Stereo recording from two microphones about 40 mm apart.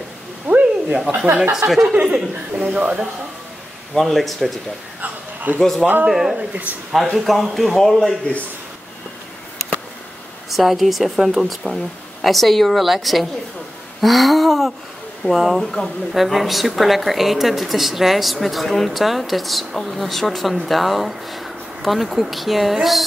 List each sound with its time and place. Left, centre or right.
0.5 s a sound: right
1.2 s speech: right
1.9 s speech: right
4.0 s speech: centre
5.0 s a sound: right
6.0 s speech: centre
6.3 s speech: right
6.9 s speech: centre
10.5 s speech: centre
15.6 s a woman's voice: centre
16.2 s speech: centre